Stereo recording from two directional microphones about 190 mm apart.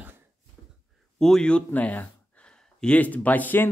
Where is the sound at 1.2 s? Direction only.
5° left (ahead or behind).